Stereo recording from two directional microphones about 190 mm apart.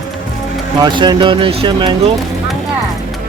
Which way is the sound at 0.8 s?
25° right (ahead or behind).